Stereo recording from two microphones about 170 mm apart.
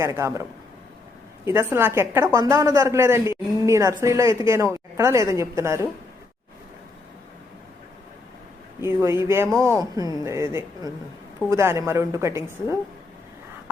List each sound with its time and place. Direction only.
0.0 s a woman's voice: 15° right (ahead or behind)
1.5 s a woman's voice: 15° right (ahead or behind)
8.8 s a woman's voice: 15° right (ahead or behind)